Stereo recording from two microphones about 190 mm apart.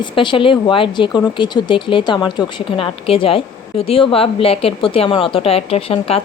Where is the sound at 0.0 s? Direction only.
25° left (ahead or behind).